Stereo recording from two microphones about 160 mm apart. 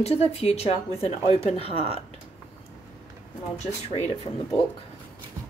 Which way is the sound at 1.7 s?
40° right (ahead or behind).